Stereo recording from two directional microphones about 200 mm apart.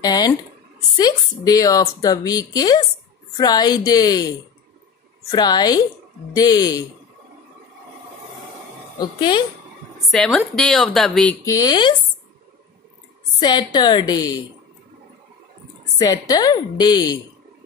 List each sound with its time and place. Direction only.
0.0 s a woman's voice: 20° left (ahead or behind)
9.9 s speech: 5° left (ahead or behind)
11.4 s a woman's voice: 20° left (ahead or behind)
13.4 s a woman's voice: 20° left (ahead or behind)
16.0 s a woman's voice: 20° left (ahead or behind)